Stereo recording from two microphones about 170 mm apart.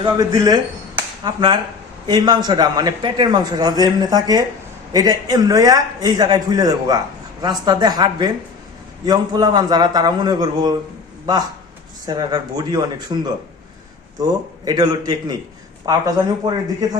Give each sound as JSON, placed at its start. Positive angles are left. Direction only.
{"t": 0.0, "sound": "a man's voice", "side_deg": -20}
{"t": 12.0, "sound": "a man's voice", "side_deg": -25}
{"t": 14.2, "sound": "a man's voice", "side_deg": -25}